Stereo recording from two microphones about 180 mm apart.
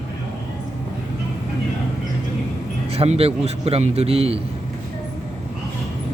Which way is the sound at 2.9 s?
35° right (ahead or behind).